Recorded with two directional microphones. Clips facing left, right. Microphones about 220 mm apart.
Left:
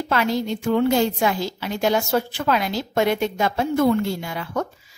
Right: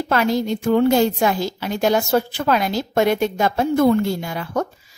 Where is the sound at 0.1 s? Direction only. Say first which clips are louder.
Right 3 dB; 45° right (ahead or behind).